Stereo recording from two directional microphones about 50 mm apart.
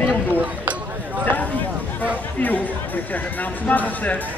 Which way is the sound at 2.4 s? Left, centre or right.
Left.